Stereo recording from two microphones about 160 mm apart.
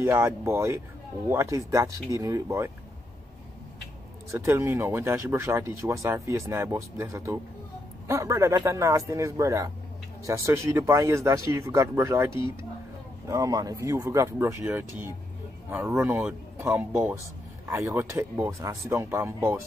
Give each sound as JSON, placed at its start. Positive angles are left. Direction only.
{"t": 0.0, "sound": "speech", "side_deg": -15}
{"t": 4.3, "sound": "speech", "side_deg": -15}